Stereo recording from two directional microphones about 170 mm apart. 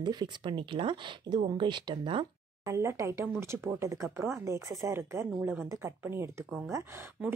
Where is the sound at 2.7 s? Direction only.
15° right (ahead or behind).